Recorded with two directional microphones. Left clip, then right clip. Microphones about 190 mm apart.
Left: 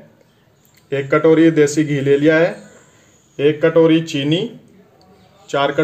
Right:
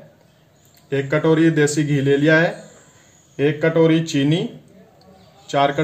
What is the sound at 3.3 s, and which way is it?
Speech, 15° right (ahead or behind).